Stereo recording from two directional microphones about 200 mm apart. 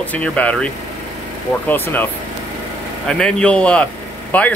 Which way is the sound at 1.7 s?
10° left (ahead or behind).